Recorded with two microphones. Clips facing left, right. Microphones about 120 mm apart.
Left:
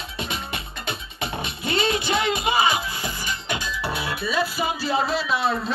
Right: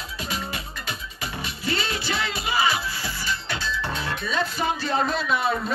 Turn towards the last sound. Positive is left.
turn(degrees=0)  # may be behind; listen again after turning